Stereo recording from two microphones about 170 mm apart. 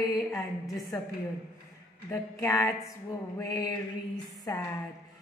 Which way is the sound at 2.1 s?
15° left (ahead or behind).